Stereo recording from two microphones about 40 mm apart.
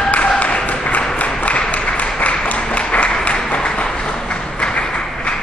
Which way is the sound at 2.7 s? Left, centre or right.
Left.